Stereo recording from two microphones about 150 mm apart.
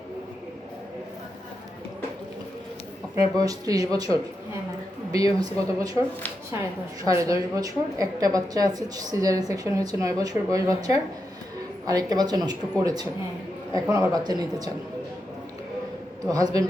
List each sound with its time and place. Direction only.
3.3 s a woman's voice: 25° right (ahead or behind)
7.0 s a woman's voice: 20° right (ahead or behind)
16.2 s a woman's voice: 25° right (ahead or behind)